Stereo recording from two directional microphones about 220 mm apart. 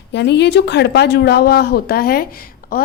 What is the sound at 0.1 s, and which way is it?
A woman's voice, 50° left (ahead or behind).